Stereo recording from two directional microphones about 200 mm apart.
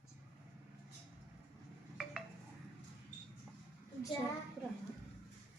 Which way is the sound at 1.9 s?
Centre (ahead or behind).